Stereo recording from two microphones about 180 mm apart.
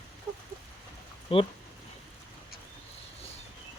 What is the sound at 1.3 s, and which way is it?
Speech, 30° left (ahead or behind).